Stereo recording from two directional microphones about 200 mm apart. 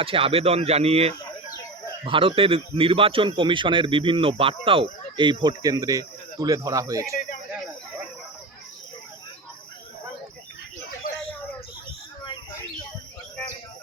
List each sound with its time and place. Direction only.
0.0 s a man's voice: 25° right (ahead or behind)
11.1 s bird: 45° left (ahead or behind)
12.2 s bird: 20° left (ahead or behind)